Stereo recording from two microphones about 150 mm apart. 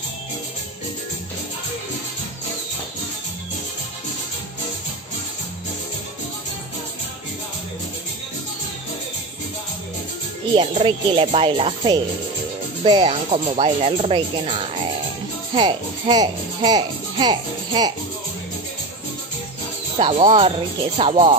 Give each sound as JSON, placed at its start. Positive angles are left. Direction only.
{"t": 10.5, "sound": "a child's voice", "side_deg": -35}
{"t": 20.0, "sound": "speech", "side_deg": -35}